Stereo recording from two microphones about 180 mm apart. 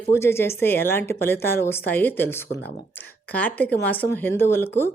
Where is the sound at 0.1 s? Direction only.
15° left (ahead or behind).